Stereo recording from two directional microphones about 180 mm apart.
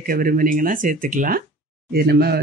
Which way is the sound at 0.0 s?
50° right (ahead or behind).